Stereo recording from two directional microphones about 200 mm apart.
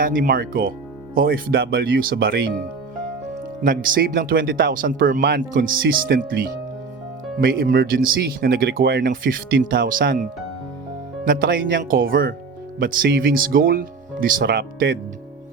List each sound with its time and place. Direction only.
0.0 s speech: 45° right (ahead or behind)
3.6 s speech: 45° right (ahead or behind)
11.3 s speech: 50° right (ahead or behind)